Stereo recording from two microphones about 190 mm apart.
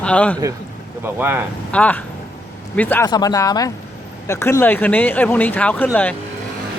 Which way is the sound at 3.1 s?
20° left (ahead or behind).